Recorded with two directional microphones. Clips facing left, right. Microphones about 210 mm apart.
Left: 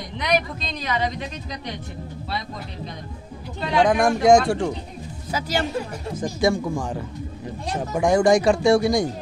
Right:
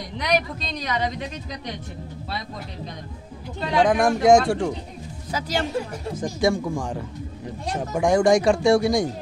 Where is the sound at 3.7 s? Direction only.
5° right (ahead or behind).